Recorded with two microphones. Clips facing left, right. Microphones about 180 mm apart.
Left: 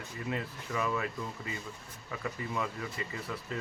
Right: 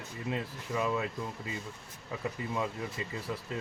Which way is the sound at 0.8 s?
20° right (ahead or behind).